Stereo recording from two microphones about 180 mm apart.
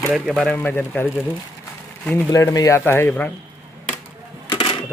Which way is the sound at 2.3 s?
20° left (ahead or behind).